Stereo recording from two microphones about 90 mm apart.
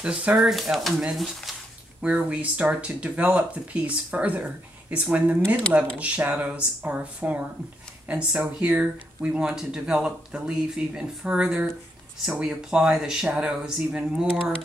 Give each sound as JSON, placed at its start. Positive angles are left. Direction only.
{"t": 0.0, "sound": "speech", "side_deg": -10}